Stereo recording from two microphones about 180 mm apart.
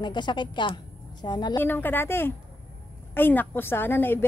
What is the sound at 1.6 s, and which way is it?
A woman's voice, 10° left (ahead or behind).